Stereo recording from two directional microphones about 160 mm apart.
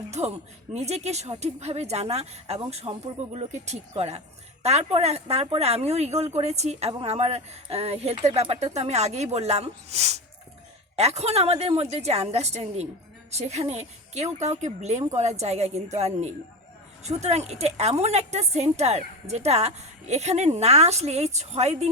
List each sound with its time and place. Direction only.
0.1 s a woman's voice: 45° right (ahead or behind)